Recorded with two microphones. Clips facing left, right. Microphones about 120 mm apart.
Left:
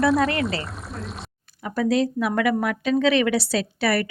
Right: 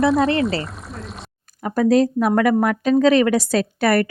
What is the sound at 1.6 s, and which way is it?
Speech, 45° right (ahead or behind).